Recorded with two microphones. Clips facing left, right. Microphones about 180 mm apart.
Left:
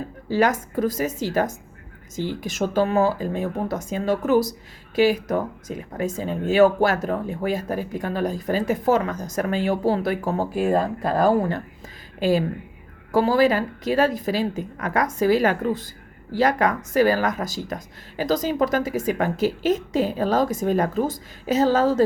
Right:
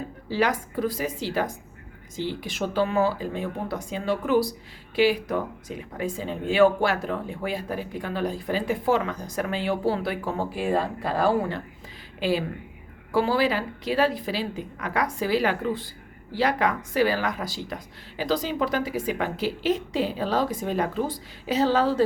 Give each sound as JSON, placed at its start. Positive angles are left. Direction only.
{"t": 0.3, "sound": "speech", "side_deg": 45}